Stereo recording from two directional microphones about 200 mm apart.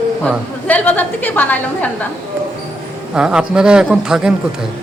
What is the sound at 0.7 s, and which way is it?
Speech, 10° left (ahead or behind).